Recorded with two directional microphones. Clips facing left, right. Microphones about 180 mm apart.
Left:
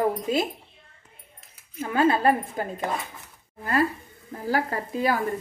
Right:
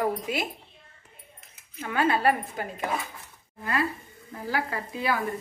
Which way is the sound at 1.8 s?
25° left (ahead or behind).